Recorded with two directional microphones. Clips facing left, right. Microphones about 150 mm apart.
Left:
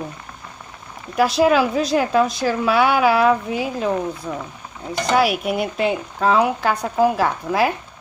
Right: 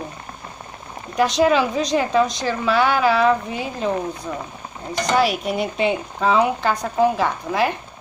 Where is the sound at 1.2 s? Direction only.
5° left (ahead or behind).